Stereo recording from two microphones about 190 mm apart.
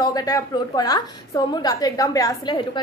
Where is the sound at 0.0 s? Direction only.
20° left (ahead or behind).